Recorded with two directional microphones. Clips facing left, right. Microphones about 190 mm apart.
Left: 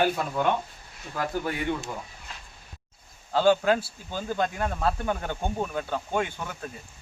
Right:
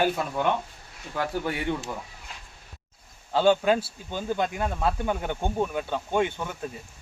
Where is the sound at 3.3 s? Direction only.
20° right (ahead or behind).